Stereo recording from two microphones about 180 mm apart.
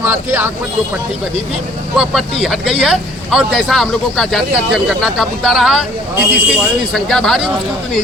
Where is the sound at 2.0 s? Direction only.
Centre (ahead or behind).